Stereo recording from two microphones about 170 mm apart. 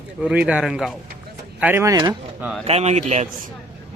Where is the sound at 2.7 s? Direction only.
40° right (ahead or behind).